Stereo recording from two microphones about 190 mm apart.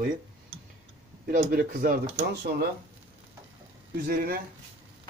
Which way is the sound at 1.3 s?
50° right (ahead or behind).